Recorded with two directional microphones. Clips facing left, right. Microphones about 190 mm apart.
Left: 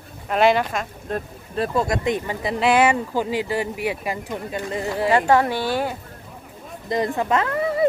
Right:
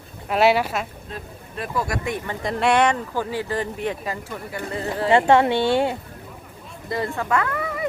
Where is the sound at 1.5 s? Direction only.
25° left (ahead or behind).